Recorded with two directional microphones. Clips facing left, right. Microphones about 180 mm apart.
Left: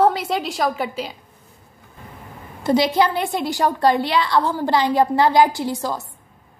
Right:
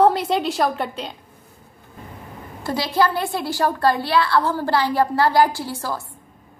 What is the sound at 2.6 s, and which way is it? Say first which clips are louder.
A woman's voice: left 3 dB; 20° left (ahead or behind).